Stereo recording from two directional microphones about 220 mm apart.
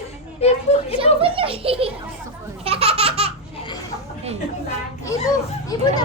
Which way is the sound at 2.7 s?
25° right (ahead or behind).